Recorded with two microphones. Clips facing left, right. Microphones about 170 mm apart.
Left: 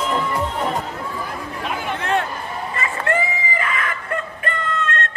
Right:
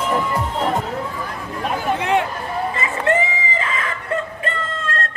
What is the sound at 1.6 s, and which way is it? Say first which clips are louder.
Chatter: right 5 dB; 40° right (ahead or behind).